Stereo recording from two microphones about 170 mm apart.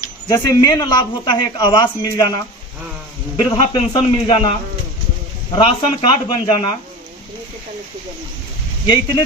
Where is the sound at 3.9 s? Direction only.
30° left (ahead or behind).